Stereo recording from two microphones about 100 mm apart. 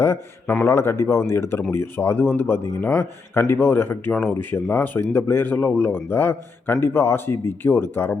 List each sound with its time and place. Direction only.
0.0 s a man's voice: 25° left (ahead or behind)